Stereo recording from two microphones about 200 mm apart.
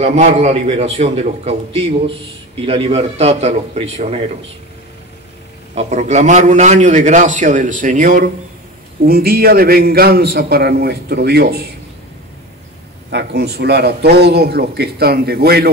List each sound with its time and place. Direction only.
0.0 s a man's voice: 35° right (ahead or behind)
5.8 s a man's voice: 35° right (ahead or behind); by 11.6 s 55° right (ahead or behind)
13.1 s a man's voice: 55° right (ahead or behind)